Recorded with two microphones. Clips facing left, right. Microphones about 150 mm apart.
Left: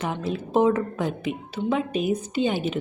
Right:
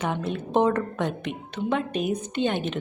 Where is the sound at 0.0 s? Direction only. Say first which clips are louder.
Even; centre (ahead or behind).